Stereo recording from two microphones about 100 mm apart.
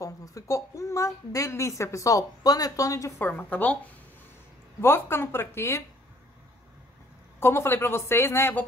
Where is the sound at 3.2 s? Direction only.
15° left (ahead or behind).